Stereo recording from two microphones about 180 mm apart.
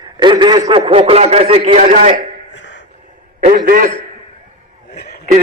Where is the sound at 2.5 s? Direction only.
75° left (ahead or behind).